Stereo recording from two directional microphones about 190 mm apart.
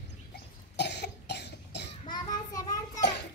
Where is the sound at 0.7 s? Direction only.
60° left (ahead or behind).